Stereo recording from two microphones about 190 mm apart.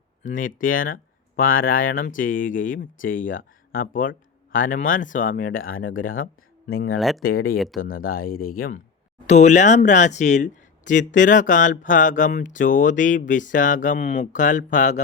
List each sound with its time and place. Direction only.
0.2 s speech: 45° left (ahead or behind)
7.2 s speech: 50° left (ahead or behind)
9.2 s speech: 35° left (ahead or behind)